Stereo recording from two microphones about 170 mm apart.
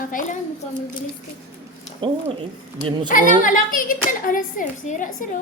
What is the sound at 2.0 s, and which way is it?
Speech, 30° right (ahead or behind).